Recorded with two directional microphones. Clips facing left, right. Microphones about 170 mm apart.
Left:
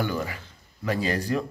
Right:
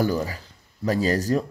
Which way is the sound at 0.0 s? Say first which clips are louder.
Right 5 dB; 35° right (ahead or behind).